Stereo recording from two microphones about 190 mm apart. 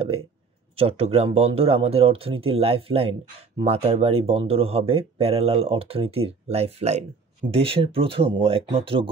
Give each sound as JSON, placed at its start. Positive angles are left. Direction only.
{"t": 0.7, "sound": "speech", "side_deg": -30}